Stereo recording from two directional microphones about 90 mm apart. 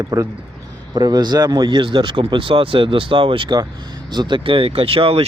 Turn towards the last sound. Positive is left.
turn(degrees=-90)